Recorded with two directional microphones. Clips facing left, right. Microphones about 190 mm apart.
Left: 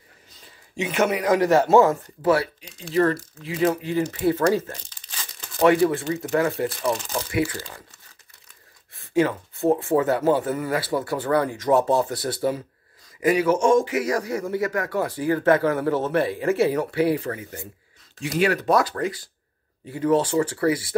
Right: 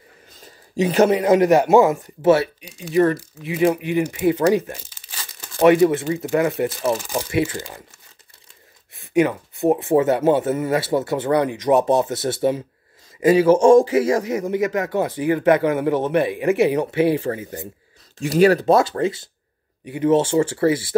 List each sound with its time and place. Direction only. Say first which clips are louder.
0.4 s speech: right 8 dB; 40° right (ahead or behind); by 4.8 s 15° right (ahead or behind)
4.8 s crumpling: right 1 dB; 5° right (ahead or behind)
5.6 s speech: right 4 dB; 20° right (ahead or behind)
9.1 s speech: right 3 dB; 15° right (ahead or behind)